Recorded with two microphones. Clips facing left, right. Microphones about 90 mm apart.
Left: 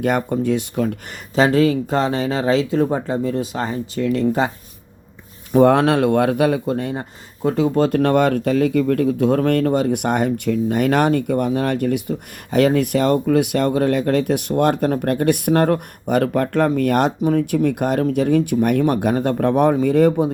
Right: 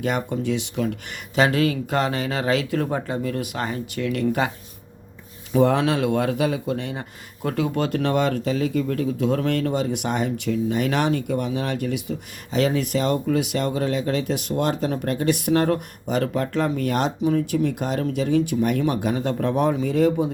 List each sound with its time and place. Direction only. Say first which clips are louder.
0.0 s speech: left 5 dB; 50° left (ahead or behind)
1.4 s speech: left 5 dB; 35° left (ahead or behind)
5.5 s speech: left 6 dB; 55° left (ahead or behind)
6.7 s speech: left 5 dB; 40° left (ahead or behind)
7.4 s speech: left 6 dB; 30° left (ahead or behind)
7.9 s speech: left 6 dB; 50° left (ahead or behind)